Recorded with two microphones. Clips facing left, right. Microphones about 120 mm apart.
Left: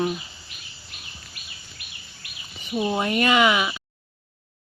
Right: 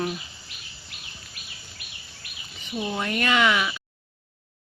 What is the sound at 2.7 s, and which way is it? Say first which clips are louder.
Speech: left 5 dB; 20° left (ahead or behind).